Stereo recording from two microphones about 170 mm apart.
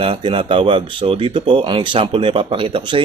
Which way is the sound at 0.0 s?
30° right (ahead or behind).